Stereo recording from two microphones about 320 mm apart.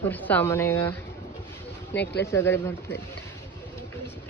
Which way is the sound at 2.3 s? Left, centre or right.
Centre.